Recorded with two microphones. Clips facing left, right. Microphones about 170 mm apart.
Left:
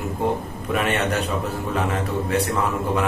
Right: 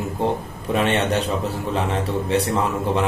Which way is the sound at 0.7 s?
30° right (ahead or behind).